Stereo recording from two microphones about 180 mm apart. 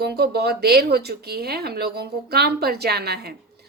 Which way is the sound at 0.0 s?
65° right (ahead or behind).